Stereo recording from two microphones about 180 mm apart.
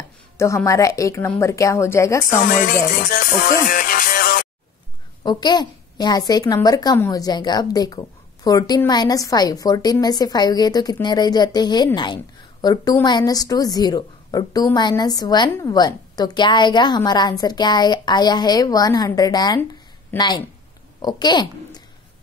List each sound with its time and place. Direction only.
0.4 s speech: 15° left (ahead or behind)
2.4 s music: 50° left (ahead or behind)
5.2 s a woman's voice: 25° left (ahead or behind)